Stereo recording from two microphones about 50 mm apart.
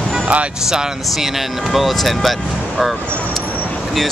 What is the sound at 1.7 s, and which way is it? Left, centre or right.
Speech, centre.